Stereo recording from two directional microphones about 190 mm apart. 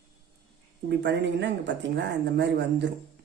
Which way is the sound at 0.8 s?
65° right (ahead or behind).